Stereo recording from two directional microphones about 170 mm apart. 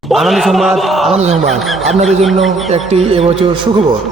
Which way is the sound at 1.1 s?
40° right (ahead or behind).